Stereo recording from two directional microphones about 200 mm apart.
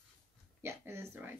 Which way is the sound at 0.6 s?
15° right (ahead or behind).